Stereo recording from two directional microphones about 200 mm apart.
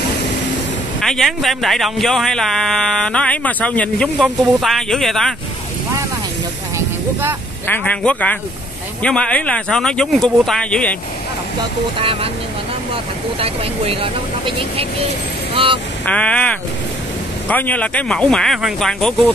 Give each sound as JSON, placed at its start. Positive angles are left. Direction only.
{"t": 1.0, "sound": "speech", "side_deg": 0}
{"t": 7.6, "sound": "speech", "side_deg": 10}
{"t": 12.0, "sound": "speech", "side_deg": -25}
{"t": 16.1, "sound": "speech", "side_deg": 5}